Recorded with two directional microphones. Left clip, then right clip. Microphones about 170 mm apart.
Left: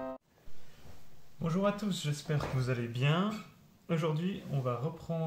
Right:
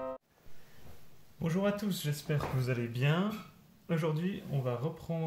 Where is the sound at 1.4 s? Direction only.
20° right (ahead or behind).